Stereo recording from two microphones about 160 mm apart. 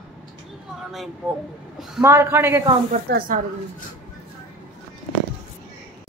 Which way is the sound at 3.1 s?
70° right (ahead or behind).